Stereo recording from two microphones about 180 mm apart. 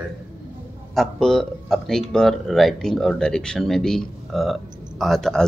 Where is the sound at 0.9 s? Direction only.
Centre (ahead or behind).